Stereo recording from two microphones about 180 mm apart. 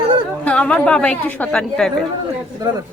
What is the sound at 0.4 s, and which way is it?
A woman's voice, 5° left (ahead or behind).